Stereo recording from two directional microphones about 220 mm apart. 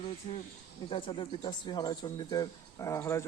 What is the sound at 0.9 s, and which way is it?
Speech, 25° left (ahead or behind).